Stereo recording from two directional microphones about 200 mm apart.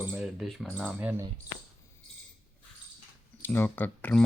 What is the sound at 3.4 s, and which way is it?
Speech, 10° left (ahead or behind).